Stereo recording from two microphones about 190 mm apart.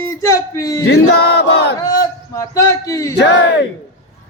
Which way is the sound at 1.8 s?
20° left (ahead or behind).